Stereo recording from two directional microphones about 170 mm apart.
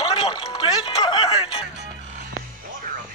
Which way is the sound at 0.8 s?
35° left (ahead or behind).